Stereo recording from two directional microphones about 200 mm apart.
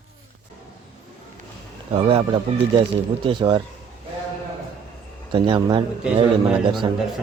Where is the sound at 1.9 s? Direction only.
25° right (ahead or behind).